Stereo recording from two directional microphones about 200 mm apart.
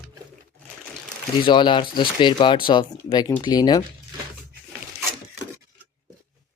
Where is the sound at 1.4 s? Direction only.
25° left (ahead or behind).